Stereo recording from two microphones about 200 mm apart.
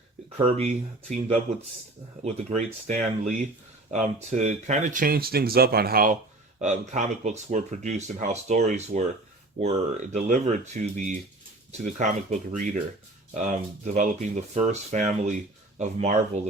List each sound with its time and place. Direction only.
0.3 s speech: 30° right (ahead or behind)
2.2 s speech: 35° right (ahead or behind)